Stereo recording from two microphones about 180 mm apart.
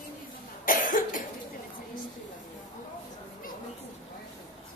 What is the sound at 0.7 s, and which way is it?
Cough, 50° left (ahead or behind).